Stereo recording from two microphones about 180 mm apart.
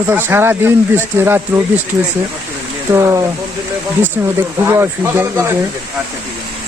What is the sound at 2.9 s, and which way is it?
Speech, 15° right (ahead or behind).